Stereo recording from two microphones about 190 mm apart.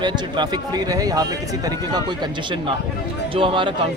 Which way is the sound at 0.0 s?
20° right (ahead or behind).